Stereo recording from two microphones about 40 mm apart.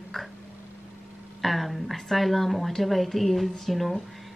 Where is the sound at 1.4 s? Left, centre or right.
Centre.